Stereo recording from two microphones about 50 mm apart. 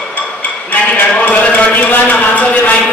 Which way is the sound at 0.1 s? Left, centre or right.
Left.